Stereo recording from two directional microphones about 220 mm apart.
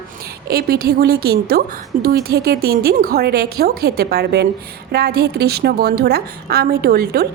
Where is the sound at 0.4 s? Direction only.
45° right (ahead or behind).